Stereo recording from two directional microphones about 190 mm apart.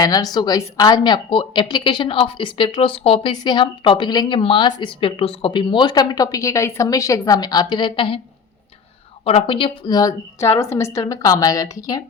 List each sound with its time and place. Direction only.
0.0 s a woman's voice: 20° left (ahead or behind)
9.2 s a woman's voice: 30° left (ahead or behind)